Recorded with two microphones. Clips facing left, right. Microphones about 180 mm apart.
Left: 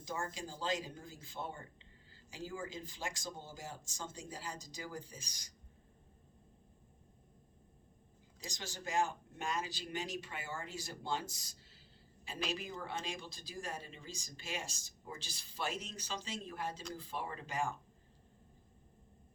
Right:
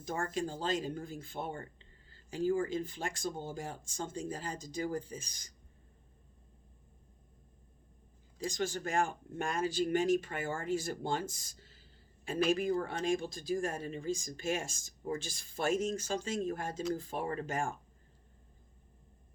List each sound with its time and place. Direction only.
0.0 s speech: 55° right (ahead or behind)
8.4 s speech: 55° right (ahead or behind)